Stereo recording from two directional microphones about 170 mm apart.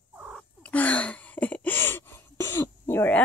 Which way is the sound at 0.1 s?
5° right (ahead or behind).